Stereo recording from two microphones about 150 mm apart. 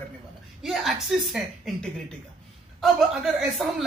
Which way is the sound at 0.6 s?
Centre (ahead or behind).